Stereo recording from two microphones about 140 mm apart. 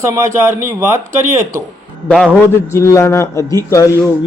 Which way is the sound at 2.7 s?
20° left (ahead or behind).